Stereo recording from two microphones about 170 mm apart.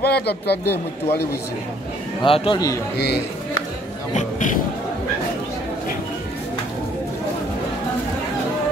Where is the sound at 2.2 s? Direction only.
30° left (ahead or behind).